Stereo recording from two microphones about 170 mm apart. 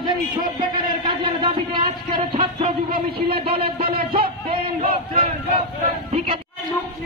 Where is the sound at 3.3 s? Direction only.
30° right (ahead or behind).